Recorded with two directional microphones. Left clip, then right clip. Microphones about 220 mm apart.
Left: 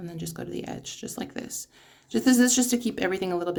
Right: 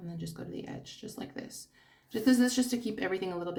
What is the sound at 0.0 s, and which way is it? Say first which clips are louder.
Speech: left 7 dB; 50° left (ahead or behind).